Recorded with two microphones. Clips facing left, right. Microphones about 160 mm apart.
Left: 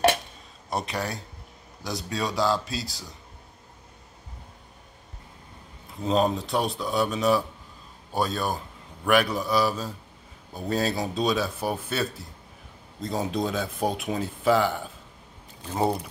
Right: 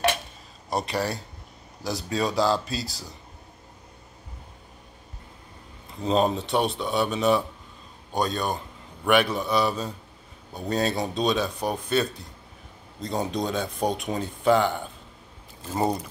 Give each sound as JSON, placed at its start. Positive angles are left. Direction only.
{"t": 0.7, "sound": "speech", "side_deg": 0}
{"t": 6.0, "sound": "speech", "side_deg": 0}